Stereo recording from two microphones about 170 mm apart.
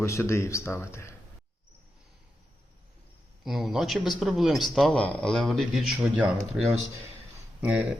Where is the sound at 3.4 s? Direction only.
Centre (ahead or behind).